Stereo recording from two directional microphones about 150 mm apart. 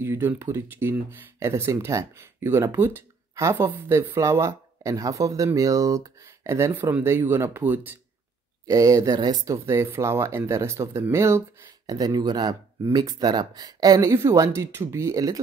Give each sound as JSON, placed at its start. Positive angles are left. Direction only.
{"t": 0.0, "sound": "speech", "side_deg": -15}